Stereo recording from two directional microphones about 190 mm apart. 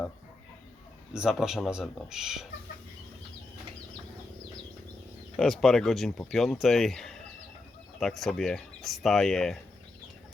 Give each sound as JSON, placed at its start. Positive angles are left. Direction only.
{"t": 1.1, "sound": "speech", "side_deg": -5}
{"t": 5.4, "sound": "speech", "side_deg": 0}